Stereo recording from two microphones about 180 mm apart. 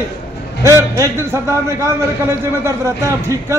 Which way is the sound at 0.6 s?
15° right (ahead or behind).